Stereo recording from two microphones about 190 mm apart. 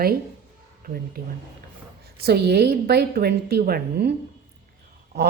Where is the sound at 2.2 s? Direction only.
55° right (ahead or behind).